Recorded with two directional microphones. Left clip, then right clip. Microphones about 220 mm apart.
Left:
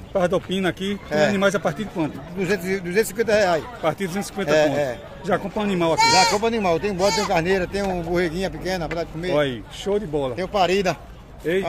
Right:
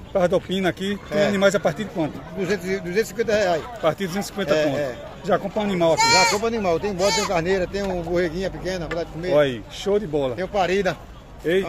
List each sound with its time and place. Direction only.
0.1 s speech: centre (ahead or behind)
2.4 s speech: 30° left (ahead or behind)
3.8 s speech: centre (ahead or behind)
4.5 s speech: 35° left (ahead or behind)
5.2 s speech: 5° left (ahead or behind)
6.4 s speech: 30° left (ahead or behind)
7.0 s speech: centre (ahead or behind)
7.3 s speech: 30° left (ahead or behind)
9.3 s speech: 5° right (ahead or behind)
10.3 s speech: 30° left (ahead or behind)